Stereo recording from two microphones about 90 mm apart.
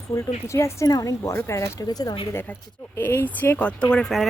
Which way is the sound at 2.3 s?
25° left (ahead or behind).